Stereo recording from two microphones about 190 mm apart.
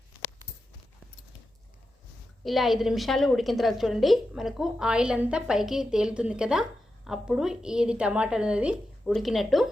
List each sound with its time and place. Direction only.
2.4 s a woman's voice: centre (ahead or behind)